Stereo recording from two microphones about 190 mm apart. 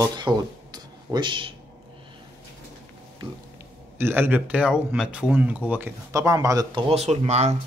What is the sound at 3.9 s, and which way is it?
Speech, 10° right (ahead or behind).